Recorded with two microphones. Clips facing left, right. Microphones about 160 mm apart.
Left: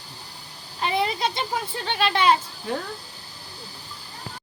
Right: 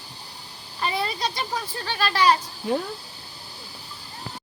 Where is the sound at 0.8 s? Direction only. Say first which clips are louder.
Left 3 dB; 20° left (ahead or behind).